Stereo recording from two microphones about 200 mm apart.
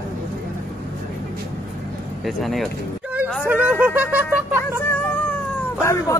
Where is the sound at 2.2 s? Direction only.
Centre (ahead or behind).